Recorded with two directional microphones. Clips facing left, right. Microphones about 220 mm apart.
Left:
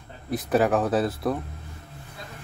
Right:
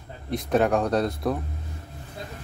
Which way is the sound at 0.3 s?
5° left (ahead or behind).